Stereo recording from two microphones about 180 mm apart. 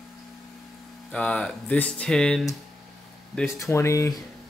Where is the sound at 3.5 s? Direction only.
15° left (ahead or behind).